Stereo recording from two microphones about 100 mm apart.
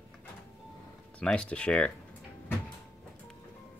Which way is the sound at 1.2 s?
10° left (ahead or behind).